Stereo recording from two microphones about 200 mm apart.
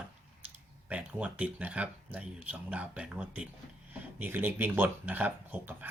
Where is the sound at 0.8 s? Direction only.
5° right (ahead or behind).